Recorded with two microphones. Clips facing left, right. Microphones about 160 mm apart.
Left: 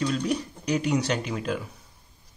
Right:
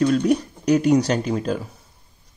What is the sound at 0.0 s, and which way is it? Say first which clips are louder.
Speech: right 8 dB; 50° right (ahead or behind).